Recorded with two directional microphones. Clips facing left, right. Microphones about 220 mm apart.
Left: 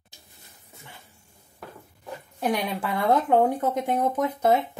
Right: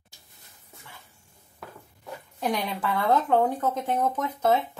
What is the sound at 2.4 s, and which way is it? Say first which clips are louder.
Speech: left 2 dB; 10° left (ahead or behind).